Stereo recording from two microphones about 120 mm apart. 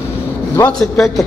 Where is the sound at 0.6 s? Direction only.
10° left (ahead or behind).